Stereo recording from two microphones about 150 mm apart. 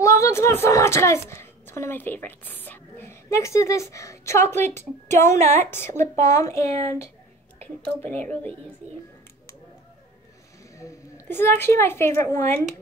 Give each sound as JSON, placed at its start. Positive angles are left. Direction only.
{"t": 0.0, "sound": "a woman's voice", "side_deg": 20}
{"t": 10.8, "sound": "a woman's voice", "side_deg": 20}